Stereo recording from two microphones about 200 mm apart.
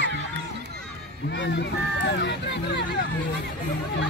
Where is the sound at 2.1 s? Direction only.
60° left (ahead or behind).